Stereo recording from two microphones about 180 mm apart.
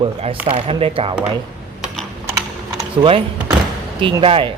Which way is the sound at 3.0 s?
30° right (ahead or behind).